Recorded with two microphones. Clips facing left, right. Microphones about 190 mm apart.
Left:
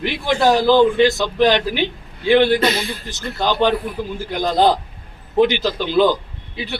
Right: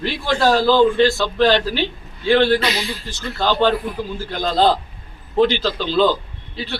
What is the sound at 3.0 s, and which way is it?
A man's voice, 20° left (ahead or behind).